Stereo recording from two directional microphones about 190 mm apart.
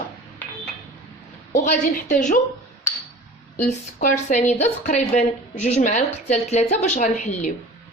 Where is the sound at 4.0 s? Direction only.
40° left (ahead or behind).